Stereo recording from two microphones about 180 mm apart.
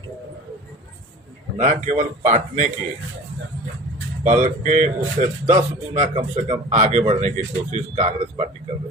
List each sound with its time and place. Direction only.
1.5 s speech: 40° right (ahead or behind)
4.2 s speech: 40° right (ahead or behind)